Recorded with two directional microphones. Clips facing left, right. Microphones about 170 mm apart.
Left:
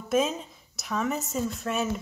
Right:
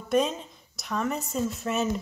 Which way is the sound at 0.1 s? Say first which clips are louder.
Right 1 dB; centre (ahead or behind).